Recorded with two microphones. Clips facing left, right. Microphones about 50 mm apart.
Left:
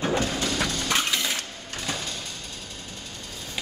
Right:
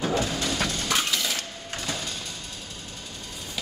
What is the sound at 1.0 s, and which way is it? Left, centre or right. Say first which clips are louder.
Sewing machine: left 1 dB; centre.